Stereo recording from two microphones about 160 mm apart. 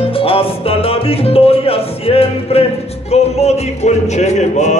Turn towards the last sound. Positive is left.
turn(degrees=45)  # may be behind; listen again after turning